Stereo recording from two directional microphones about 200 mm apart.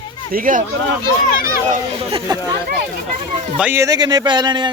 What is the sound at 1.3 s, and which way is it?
Speech, 45° left (ahead or behind).